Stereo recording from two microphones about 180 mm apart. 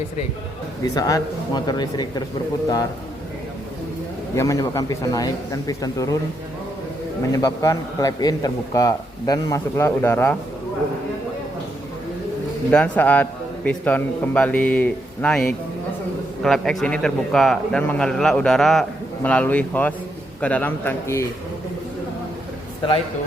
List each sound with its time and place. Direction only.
0.9 s a man's voice: 20° left (ahead or behind)
4.4 s a man's voice: 15° left (ahead or behind)
7.3 s a man's voice: 20° left (ahead or behind)
12.7 s a man's voice: 10° left (ahead or behind)
22.8 s a man's voice: 25° left (ahead or behind)